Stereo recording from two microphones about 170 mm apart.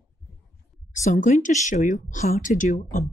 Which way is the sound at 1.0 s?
45° left (ahead or behind).